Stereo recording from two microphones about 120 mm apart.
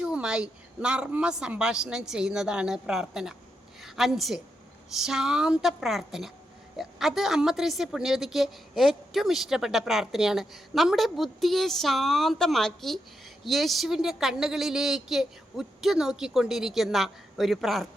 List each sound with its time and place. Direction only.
0.0 s a woman's voice: 5° right (ahead or behind)